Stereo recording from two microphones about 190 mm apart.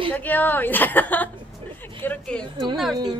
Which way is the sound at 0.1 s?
10° left (ahead or behind).